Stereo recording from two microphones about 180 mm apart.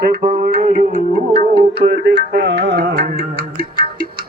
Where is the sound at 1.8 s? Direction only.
30° right (ahead or behind).